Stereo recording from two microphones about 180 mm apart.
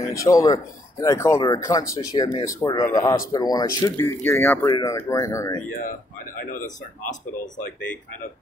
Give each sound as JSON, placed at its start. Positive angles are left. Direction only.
{"t": 0.0, "sound": "speech", "side_deg": 15}
{"t": 5.7, "sound": "speech", "side_deg": 50}